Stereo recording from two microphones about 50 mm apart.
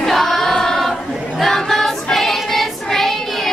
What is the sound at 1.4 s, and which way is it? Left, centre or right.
Child singing, centre.